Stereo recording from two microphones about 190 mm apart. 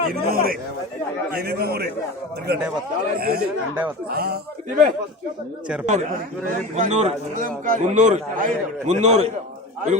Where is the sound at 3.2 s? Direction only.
55° right (ahead or behind).